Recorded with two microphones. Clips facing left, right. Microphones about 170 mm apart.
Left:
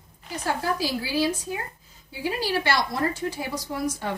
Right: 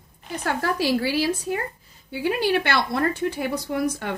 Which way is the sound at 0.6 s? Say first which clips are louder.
Right 5 dB; 70° right (ahead or behind).